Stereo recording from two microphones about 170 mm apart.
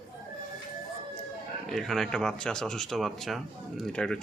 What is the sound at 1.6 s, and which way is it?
Speech, centre (ahead or behind).